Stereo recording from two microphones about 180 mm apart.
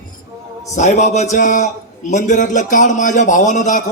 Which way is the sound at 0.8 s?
40° left (ahead or behind).